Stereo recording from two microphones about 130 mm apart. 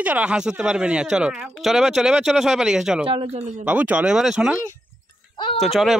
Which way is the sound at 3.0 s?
40° right (ahead or behind).